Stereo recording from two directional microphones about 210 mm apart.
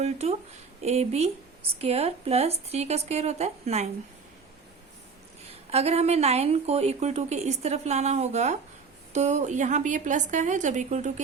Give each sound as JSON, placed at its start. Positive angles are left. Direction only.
{"t": 0.0, "sound": "speech", "side_deg": -30}
{"t": 5.7, "sound": "speech", "side_deg": -30}